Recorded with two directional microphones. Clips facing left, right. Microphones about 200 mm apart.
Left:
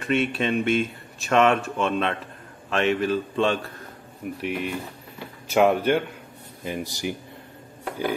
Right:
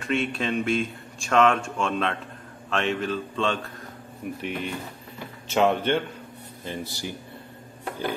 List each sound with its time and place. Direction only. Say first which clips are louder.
0.0 s a man's voice: left 3 dB; 5° left (ahead or behind)